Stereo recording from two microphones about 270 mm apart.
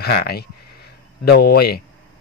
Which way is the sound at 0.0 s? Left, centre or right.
Left.